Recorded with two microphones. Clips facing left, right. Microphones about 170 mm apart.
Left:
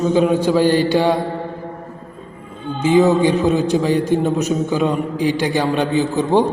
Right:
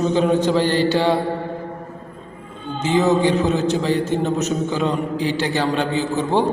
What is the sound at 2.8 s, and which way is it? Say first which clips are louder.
A man's voice: left 4 dB; 10° left (ahead or behind).